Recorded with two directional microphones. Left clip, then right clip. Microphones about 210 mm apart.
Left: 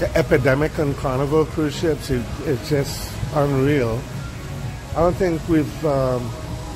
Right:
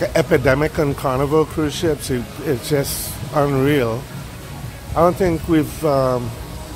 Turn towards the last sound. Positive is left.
turn(degrees=-20)  # may be behind; listen again after turning